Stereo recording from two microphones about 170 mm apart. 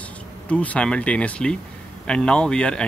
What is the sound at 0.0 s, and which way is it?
Speech, 10° left (ahead or behind).